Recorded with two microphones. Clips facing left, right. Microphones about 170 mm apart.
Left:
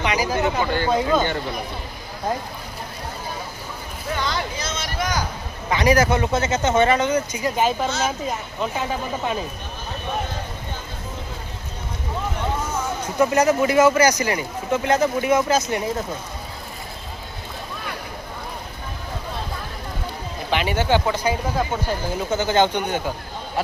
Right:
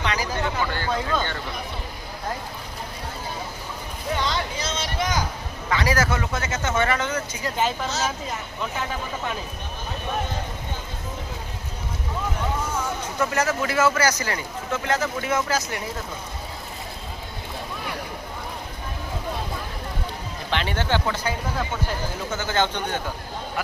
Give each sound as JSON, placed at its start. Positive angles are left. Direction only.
{"t": 0.0, "sound": "speech", "side_deg": 15}
{"t": 4.6, "sound": "speech", "side_deg": -30}
{"t": 5.6, "sound": "speech", "side_deg": 20}
{"t": 13.1, "sound": "speech", "side_deg": 15}
{"t": 20.5, "sound": "speech", "side_deg": 10}